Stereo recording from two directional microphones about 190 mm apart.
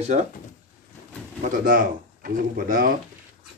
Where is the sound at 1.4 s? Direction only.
45° right (ahead or behind).